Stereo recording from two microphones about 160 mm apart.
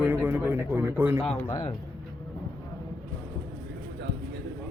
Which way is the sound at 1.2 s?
10° left (ahead or behind).